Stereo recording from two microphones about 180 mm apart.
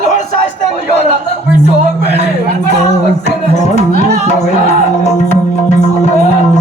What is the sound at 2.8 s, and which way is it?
Speech, 35° left (ahead or behind).